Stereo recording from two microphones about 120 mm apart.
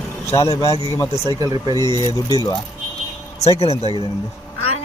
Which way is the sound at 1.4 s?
35° right (ahead or behind).